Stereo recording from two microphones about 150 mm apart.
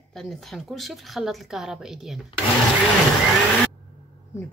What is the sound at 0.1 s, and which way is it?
A woman's voice, centre (ahead or behind).